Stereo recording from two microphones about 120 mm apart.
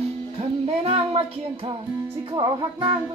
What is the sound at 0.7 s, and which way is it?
Child singing, 60° right (ahead or behind).